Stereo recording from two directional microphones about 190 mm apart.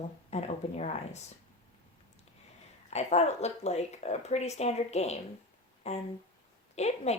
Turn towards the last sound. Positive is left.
turn(degrees=35)  # may be behind; listen again after turning